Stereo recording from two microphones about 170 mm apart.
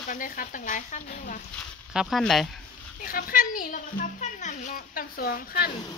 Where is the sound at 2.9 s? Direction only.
55° left (ahead or behind).